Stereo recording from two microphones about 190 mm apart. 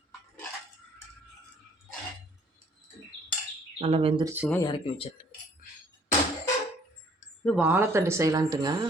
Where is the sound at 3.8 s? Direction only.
30° right (ahead or behind).